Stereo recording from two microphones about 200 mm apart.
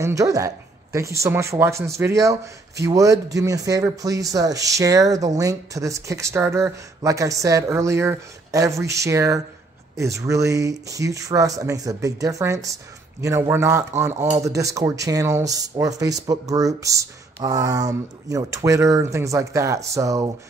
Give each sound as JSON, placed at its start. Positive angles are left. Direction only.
{"t": 0.0, "sound": "speech", "side_deg": -15}